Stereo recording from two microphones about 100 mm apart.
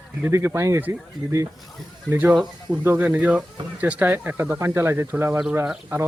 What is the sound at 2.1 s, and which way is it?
Speech, 15° right (ahead or behind).